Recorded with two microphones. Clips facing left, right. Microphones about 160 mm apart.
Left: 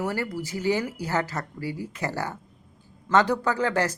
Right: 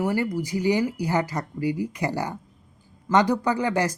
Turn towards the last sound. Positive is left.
turn(degrees=-15)  # may be behind; listen again after turning